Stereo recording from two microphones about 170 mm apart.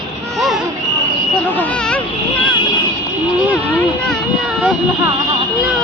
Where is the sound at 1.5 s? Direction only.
10° left (ahead or behind).